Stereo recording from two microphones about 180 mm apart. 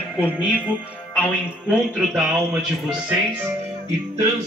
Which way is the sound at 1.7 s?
5° right (ahead or behind).